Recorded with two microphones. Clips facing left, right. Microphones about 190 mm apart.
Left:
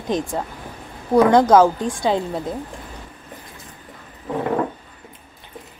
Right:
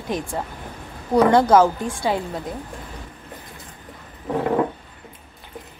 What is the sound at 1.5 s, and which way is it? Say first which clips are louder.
Speech: left 2 dB; 15° left (ahead or behind).